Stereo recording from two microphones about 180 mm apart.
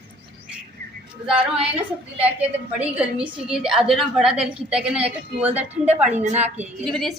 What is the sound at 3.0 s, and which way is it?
A woman's voice, 5° right (ahead or behind).